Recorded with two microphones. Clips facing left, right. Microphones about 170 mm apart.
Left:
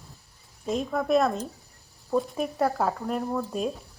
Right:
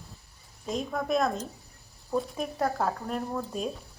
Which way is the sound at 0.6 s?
Centre (ahead or behind).